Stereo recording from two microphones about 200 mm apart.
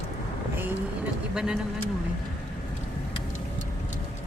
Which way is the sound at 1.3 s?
5° right (ahead or behind).